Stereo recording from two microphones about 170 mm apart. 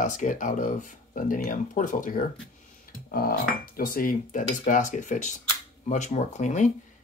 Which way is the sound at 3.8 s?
55° left (ahead or behind).